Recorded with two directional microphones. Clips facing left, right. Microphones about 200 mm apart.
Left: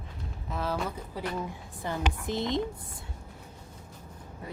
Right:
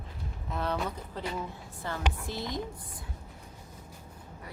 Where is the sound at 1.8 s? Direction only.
20° left (ahead or behind).